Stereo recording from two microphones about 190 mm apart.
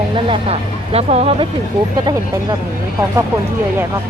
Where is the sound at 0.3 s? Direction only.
30° right (ahead or behind).